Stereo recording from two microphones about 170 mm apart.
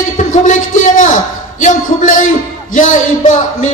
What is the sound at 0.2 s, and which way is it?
A man's voice, 50° left (ahead or behind).